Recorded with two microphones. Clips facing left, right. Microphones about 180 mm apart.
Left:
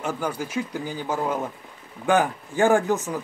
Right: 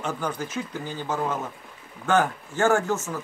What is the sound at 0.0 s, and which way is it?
Speech, 10° left (ahead or behind).